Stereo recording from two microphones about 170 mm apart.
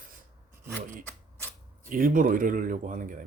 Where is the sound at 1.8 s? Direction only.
50° right (ahead or behind).